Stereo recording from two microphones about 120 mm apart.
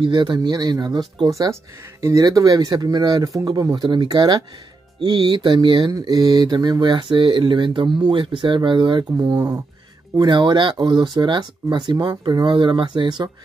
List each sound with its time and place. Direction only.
0.0 s speech: 40° right (ahead or behind)
9.1 s speech: 25° right (ahead or behind)
10.1 s speech: 40° right (ahead or behind)